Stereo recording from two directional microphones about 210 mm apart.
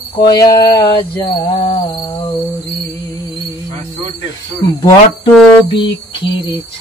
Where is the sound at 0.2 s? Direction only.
20° left (ahead or behind).